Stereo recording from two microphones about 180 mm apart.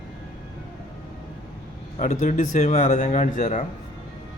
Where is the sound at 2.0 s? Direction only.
45° left (ahead or behind).